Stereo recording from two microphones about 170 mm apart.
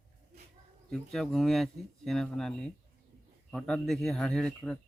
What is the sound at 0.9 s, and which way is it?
A man's voice, centre (ahead or behind).